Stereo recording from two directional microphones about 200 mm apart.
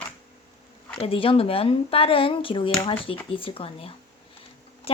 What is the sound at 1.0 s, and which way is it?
Speech, 25° left (ahead or behind).